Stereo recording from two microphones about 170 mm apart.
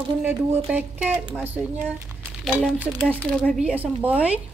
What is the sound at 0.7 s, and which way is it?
Speech, 10° right (ahead or behind).